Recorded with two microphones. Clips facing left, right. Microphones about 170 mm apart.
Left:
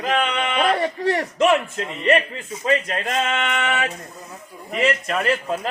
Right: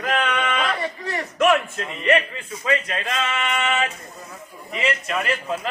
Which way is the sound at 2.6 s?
45° left (ahead or behind).